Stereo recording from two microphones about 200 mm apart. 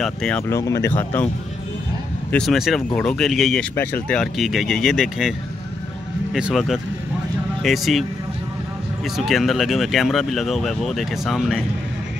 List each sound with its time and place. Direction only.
0.0 s speech: 5° left (ahead or behind)
0.5 s speech: 15° left (ahead or behind)
2.3 s speech: centre (ahead or behind)
6.3 s speech: centre (ahead or behind)
9.1 s speech: centre (ahead or behind)